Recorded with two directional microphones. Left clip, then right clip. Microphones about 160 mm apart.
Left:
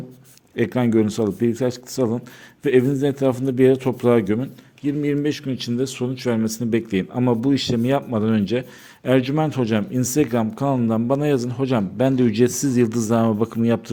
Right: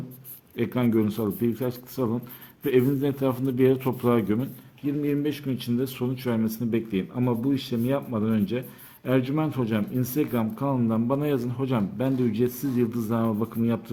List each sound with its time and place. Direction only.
0.5 s speech: 35° left (ahead or behind)
4.9 s speech: 45° left (ahead or behind)